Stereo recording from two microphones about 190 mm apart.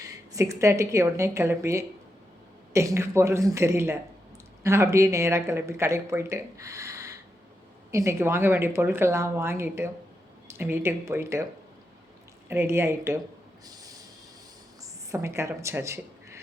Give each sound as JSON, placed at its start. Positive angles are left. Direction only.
{"t": 0.0, "sound": "speech", "side_deg": -15}
{"t": 12.5, "sound": "speech", "side_deg": -15}
{"t": 15.1, "sound": "speech", "side_deg": -15}